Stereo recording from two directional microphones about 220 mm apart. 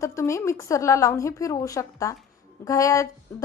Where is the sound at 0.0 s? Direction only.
15° left (ahead or behind).